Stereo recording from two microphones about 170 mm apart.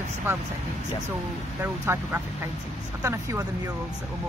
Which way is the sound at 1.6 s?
15° right (ahead or behind).